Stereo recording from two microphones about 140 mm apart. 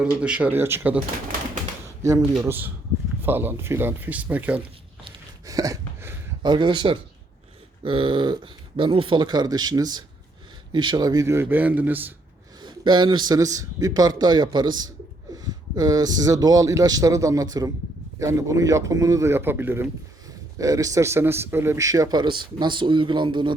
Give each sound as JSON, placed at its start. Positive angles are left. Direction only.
{"t": 0.0, "sound": "a man's voice", "side_deg": -10}
{"t": 2.4, "sound": "a man's voice", "side_deg": -15}
{"t": 5.5, "sound": "a sound", "side_deg": -25}
{"t": 6.4, "sound": "a man's voice", "side_deg": -35}
{"t": 12.6, "sound": "speech", "side_deg": -35}